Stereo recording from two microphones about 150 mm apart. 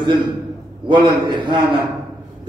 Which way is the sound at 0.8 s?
30° right (ahead or behind).